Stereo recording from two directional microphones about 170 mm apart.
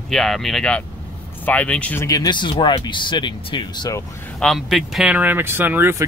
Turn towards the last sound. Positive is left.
turn(degrees=-10)  # may be behind; listen again after turning